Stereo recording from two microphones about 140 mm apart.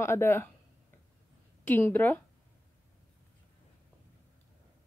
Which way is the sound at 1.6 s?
15° left (ahead or behind).